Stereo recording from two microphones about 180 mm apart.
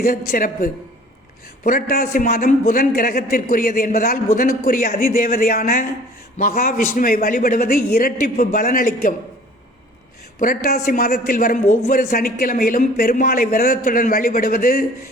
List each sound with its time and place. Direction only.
0.0 s speech: 55° left (ahead or behind)
10.4 s speech: 55° left (ahead or behind)